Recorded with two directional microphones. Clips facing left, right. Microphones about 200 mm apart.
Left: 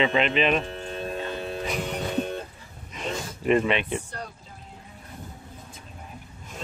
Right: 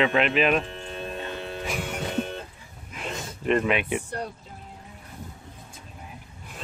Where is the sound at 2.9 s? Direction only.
Centre (ahead or behind).